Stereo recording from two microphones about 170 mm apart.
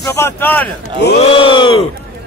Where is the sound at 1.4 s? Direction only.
30° left (ahead or behind).